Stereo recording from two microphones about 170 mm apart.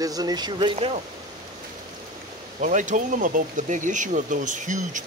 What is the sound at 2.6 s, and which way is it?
Speech, 45° right (ahead or behind).